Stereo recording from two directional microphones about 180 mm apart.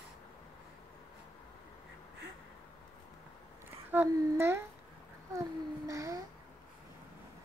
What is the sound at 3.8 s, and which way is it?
Speech, 10° right (ahead or behind).